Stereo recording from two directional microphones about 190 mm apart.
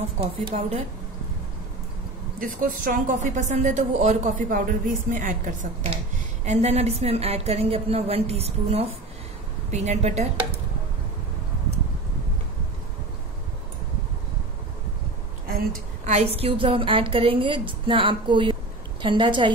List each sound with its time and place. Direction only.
0.2 s a woman's voice: 35° right (ahead or behind)
2.4 s a woman's voice: 45° right (ahead or behind)
15.4 s a sound: 55° right (ahead or behind)
16.1 s a woman's voice: 35° right (ahead or behind)